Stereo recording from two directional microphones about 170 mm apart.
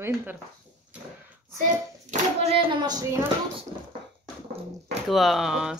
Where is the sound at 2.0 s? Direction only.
35° right (ahead or behind).